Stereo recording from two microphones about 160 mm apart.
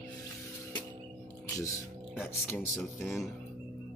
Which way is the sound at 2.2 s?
15° left (ahead or behind).